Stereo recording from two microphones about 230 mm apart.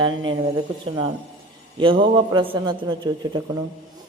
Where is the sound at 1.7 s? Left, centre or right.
Right.